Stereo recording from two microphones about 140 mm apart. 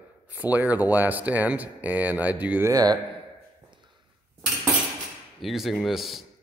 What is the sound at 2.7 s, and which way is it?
Speech, 25° right (ahead or behind).